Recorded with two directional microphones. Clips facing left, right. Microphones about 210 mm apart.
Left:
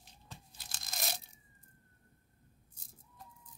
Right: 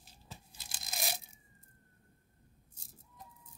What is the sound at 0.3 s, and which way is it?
Tearing, 5° right (ahead or behind).